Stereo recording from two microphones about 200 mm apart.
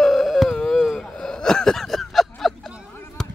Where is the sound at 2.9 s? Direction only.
10° left (ahead or behind).